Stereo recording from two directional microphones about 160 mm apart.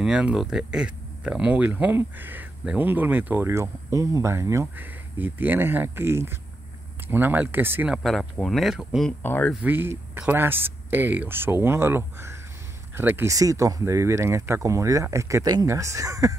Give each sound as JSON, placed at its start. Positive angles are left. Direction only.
{"t": 0.0, "sound": "speech", "side_deg": -5}
{"t": 9.2, "sound": "speech", "side_deg": 10}
{"t": 9.5, "sound": "speech", "side_deg": -10}